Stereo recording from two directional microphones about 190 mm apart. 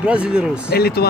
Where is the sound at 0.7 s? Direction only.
55° left (ahead or behind).